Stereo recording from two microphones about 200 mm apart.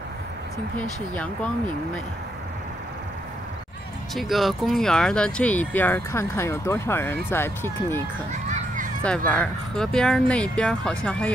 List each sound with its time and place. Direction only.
0.7 s speech: 5° left (ahead or behind)
4.1 s speech: centre (ahead or behind)
8.5 s a sound: 40° right (ahead or behind)
9.0 s speech: 5° left (ahead or behind)